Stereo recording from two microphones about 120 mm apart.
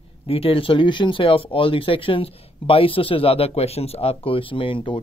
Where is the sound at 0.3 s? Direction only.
50° left (ahead or behind).